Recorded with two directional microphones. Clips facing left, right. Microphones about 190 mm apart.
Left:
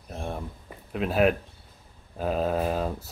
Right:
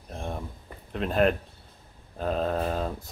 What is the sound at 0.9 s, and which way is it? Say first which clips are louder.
Speech: left 1 dB; 5° left (ahead or behind).